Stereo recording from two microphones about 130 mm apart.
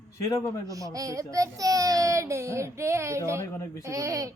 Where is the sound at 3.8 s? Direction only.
25° right (ahead or behind).